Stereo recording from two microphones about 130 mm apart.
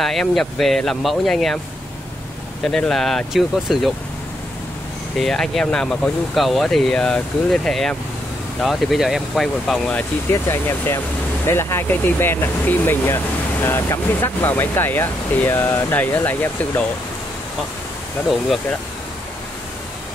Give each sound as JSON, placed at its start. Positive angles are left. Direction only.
{"t": 0.0, "sound": "speech", "side_deg": 0}
{"t": 2.6, "sound": "speech", "side_deg": 5}
{"t": 5.1, "sound": "speech", "side_deg": 5}
{"t": 9.9, "sound": "speech", "side_deg": 20}